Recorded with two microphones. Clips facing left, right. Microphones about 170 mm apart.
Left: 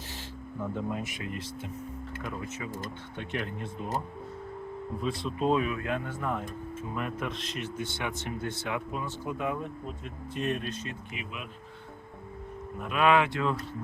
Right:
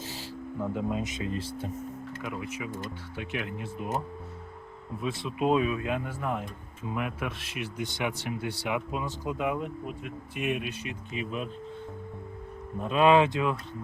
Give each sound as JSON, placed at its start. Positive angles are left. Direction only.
{"t": 0.7, "sound": "speech", "side_deg": -20}
{"t": 3.2, "sound": "speech", "side_deg": -5}
{"t": 4.9, "sound": "speech", "side_deg": -5}
{"t": 5.4, "sound": "speech", "side_deg": -20}
{"t": 11.1, "sound": "speech", "side_deg": -35}
{"t": 12.8, "sound": "speech", "side_deg": -25}